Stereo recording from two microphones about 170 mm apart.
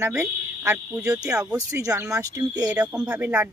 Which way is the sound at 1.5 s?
20° right (ahead or behind).